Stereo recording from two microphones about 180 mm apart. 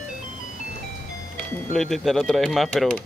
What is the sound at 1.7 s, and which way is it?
Speech, centre (ahead or behind).